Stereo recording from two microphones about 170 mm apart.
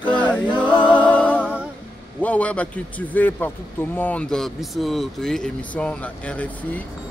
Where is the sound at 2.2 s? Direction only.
10° left (ahead or behind).